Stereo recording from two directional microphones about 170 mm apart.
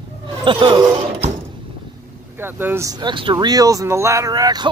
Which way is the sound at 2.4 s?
10° right (ahead or behind).